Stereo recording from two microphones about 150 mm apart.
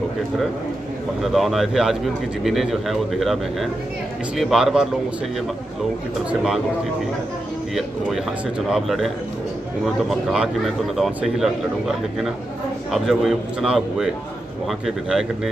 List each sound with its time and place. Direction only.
1.2 s speech: centre (ahead or behind)
7.7 s speech: centre (ahead or behind)
12.9 s speech: centre (ahead or behind)